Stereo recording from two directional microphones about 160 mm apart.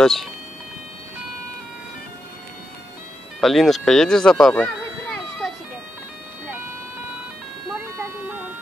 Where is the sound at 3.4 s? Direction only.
Centre (ahead or behind).